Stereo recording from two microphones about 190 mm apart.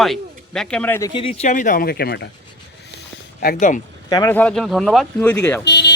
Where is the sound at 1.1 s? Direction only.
30° left (ahead or behind); by 2.3 s 60° left (ahead or behind).